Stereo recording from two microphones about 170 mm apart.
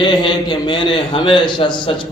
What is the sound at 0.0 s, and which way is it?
A man's voice, 25° left (ahead or behind).